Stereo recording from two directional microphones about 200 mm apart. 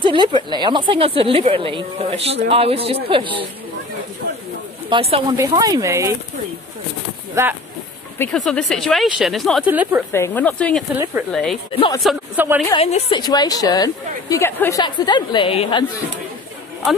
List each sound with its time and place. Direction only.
0.0 s a woman's voice: 25° right (ahead or behind)
4.8 s speech: 25° right (ahead or behind)
7.4 s speech: 15° right (ahead or behind)
8.2 s speech: 5° left (ahead or behind)
10.1 s speech: 10° left (ahead or behind)
11.7 s a woman's voice: 25° left (ahead or behind)
12.0 s speech: centre (ahead or behind)
12.6 s a woman's voice: 30° left (ahead or behind)